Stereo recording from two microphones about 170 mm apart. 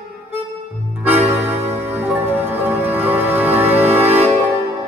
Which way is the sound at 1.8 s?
10° right (ahead or behind).